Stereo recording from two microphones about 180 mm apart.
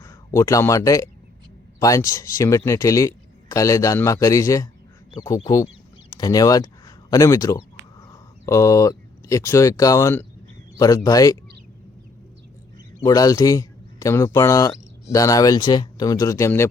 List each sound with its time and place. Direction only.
0.0 s speech: 15° left (ahead or behind)
5.6 s a sound: 20° left (ahead or behind)
7.9 s speech: 20° left (ahead or behind)
13.0 s speech: 20° left (ahead or behind)